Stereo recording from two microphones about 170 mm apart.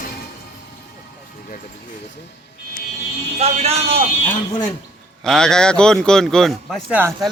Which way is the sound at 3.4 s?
40° right (ahead or behind).